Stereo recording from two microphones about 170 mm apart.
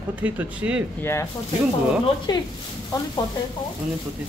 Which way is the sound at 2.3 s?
25° left (ahead or behind).